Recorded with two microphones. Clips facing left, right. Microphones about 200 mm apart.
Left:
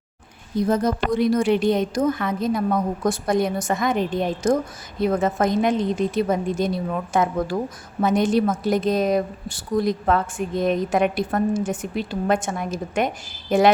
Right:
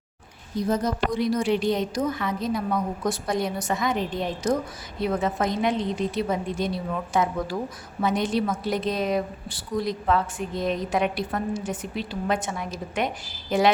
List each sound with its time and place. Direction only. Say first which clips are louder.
0.7 s a woman's voice: left 3 dB; 55° left (ahead or behind)